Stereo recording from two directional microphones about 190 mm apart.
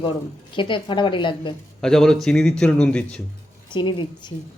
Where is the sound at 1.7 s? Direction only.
Centre (ahead or behind).